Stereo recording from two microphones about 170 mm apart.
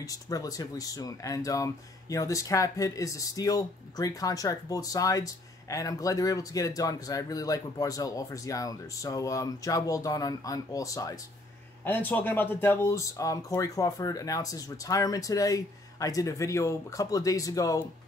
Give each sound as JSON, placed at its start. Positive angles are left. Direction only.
{"t": 0.0, "sound": "speech", "side_deg": 20}